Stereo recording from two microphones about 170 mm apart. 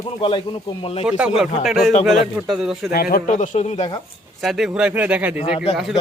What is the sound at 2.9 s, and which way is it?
Speech, 65° left (ahead or behind).